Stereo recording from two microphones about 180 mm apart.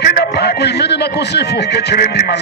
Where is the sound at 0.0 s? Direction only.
65° left (ahead or behind).